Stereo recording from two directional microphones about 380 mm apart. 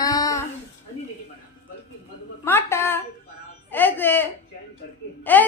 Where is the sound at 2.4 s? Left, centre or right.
Centre.